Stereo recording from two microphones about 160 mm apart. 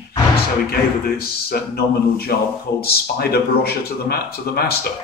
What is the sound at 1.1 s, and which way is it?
A man's voice, 75° left (ahead or behind).